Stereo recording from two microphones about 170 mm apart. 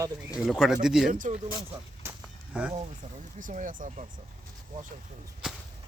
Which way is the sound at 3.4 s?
50° right (ahead or behind).